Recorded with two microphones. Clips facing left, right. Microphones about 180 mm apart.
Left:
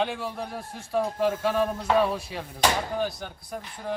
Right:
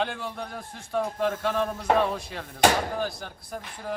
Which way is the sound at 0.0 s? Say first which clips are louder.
Left 2 dB; centre (ahead or behind).